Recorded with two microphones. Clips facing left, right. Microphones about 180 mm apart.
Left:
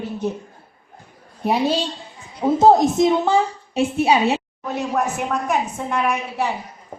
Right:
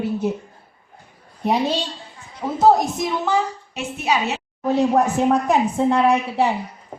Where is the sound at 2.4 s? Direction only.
20° left (ahead or behind).